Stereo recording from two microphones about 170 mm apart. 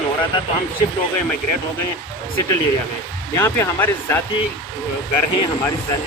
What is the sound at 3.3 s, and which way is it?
Speech, 15° left (ahead or behind).